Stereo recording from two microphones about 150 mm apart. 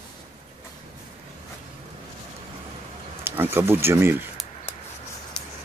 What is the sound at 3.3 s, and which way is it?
Speech, 15° right (ahead or behind).